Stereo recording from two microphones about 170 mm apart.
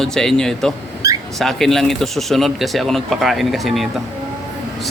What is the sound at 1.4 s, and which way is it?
Speech, centre (ahead or behind).